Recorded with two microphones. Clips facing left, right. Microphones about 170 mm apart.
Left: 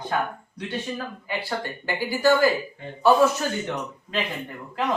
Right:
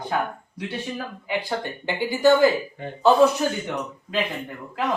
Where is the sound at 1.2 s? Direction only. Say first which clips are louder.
Right 3 dB; 15° right (ahead or behind).